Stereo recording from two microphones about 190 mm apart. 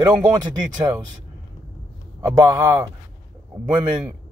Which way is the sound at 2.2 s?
15° right (ahead or behind).